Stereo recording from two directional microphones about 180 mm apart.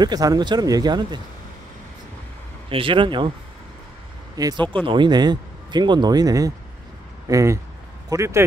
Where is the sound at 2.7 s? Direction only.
30° right (ahead or behind).